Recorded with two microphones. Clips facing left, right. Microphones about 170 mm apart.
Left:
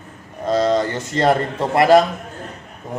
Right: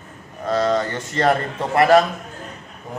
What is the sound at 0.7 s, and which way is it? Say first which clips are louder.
A man's voice: left 2 dB; 25° left (ahead or behind).